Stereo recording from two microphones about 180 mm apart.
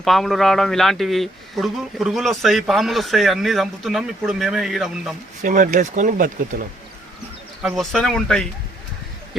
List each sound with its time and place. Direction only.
0.0 s speech: centre (ahead or behind)
5.4 s speech: 50° right (ahead or behind)
7.6 s speech: centre (ahead or behind)